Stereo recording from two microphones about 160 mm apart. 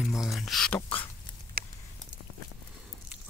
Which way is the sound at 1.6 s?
70° right (ahead or behind).